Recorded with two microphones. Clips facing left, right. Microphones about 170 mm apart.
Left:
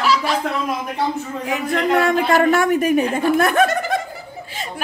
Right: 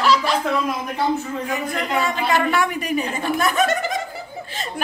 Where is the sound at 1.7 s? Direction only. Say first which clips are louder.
Left 10 dB; 55° left (ahead or behind).